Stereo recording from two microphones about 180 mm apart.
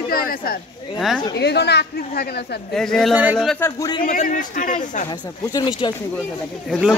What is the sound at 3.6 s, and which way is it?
Speech, 20° left (ahead or behind).